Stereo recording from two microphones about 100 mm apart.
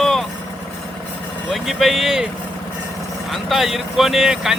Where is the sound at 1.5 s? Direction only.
Centre (ahead or behind).